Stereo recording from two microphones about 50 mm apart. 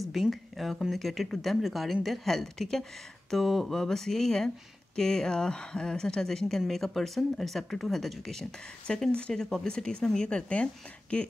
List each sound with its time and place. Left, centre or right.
0.1 s speech: centre; by 11.2 s left